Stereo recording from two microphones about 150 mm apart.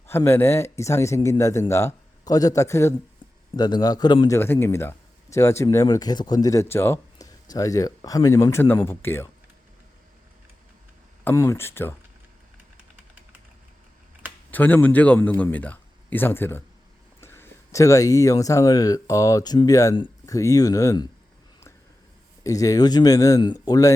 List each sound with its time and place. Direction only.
0.3 s speech: 15° left (ahead or behind)
4.4 s speech: 15° left (ahead or behind)
11.2 s speech: 15° left (ahead or behind)
14.5 s speech: 10° left (ahead or behind)
22.4 s speech: 25° left (ahead or behind)